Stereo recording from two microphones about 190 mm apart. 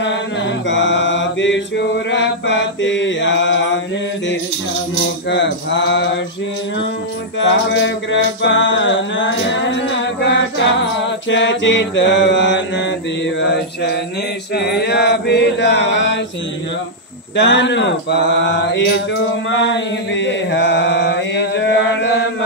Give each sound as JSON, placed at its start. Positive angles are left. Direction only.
{"t": 0.7, "sound": "mantra", "side_deg": 70}
{"t": 5.3, "sound": "mantra", "side_deg": 70}
{"t": 7.3, "sound": "mantra", "side_deg": 70}
{"t": 17.4, "sound": "mantra", "side_deg": 70}